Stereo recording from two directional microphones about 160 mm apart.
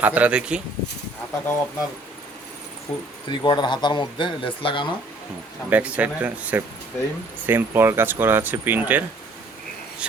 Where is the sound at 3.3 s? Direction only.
25° left (ahead or behind).